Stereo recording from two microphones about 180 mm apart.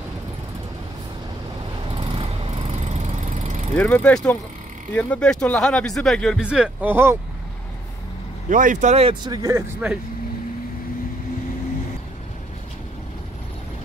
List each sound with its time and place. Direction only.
2.0 s vehicle: 35° right (ahead or behind)
3.7 s speech: 5° left (ahead or behind); by 7.2 s 10° right (ahead or behind)
8.5 s speech: 45° right (ahead or behind)
9.2 s speech: 20° right (ahead or behind)